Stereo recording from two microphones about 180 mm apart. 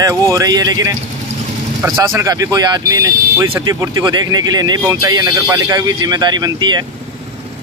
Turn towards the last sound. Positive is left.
turn(degrees=-25)  # may be behind; listen again after turning